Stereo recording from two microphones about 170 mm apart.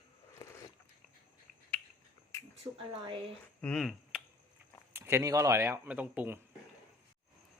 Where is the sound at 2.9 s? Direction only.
30° right (ahead or behind).